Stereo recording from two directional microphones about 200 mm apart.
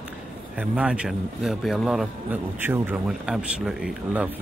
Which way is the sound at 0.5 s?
5° right (ahead or behind).